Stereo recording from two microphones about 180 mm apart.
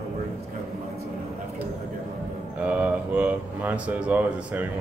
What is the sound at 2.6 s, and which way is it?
Speech, 5° right (ahead or behind).